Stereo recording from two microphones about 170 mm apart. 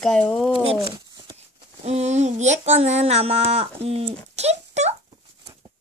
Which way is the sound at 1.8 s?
40° right (ahead or behind).